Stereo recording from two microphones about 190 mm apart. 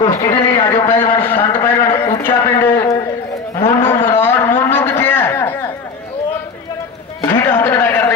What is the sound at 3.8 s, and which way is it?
Livestock, 10° left (ahead or behind).